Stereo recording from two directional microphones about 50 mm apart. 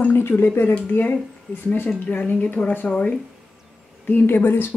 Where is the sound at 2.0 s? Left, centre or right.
Left.